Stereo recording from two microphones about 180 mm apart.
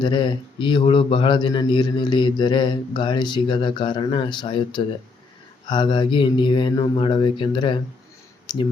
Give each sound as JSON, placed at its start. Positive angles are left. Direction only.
{"t": 0.0, "sound": "a man's voice", "side_deg": 25}